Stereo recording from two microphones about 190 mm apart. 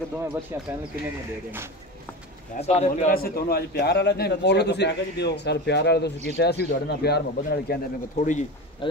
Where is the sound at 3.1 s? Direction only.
55° left (ahead or behind).